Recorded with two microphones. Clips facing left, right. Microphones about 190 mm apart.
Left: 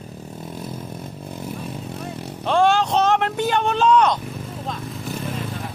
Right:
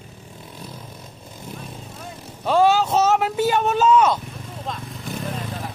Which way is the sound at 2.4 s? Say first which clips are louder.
Right 1 dB; 5° right (ahead or behind).